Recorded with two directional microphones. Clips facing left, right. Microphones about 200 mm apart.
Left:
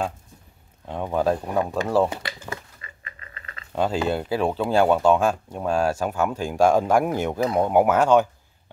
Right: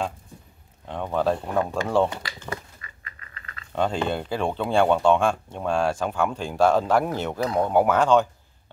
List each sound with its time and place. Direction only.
0.8 s speech: 10° left (ahead or behind)
2.8 s a sound: 25° left (ahead or behind)
3.7 s speech: 5° left (ahead or behind)